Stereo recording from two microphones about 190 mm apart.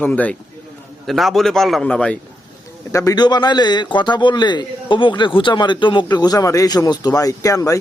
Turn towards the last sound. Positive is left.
turn(degrees=15)  # may be behind; listen again after turning